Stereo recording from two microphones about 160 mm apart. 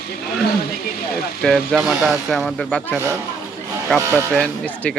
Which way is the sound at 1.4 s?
Centre (ahead or behind).